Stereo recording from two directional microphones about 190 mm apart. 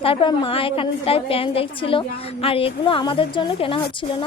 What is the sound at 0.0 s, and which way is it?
A woman's voice, 30° left (ahead or behind).